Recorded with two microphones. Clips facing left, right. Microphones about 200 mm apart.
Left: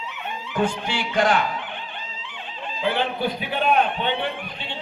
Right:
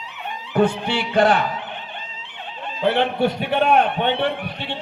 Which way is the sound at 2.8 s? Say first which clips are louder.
Right 5 dB; 65° right (ahead or behind).